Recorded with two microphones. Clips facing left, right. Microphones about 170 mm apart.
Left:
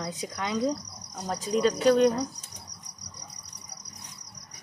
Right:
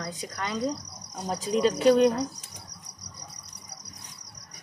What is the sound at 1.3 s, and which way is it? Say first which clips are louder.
Speech: right 1 dB; 15° right (ahead or behind).